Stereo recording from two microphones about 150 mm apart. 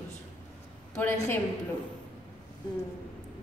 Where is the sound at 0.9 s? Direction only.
15° left (ahead or behind).